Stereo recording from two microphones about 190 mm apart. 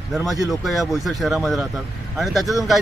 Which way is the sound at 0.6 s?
Centre (ahead or behind).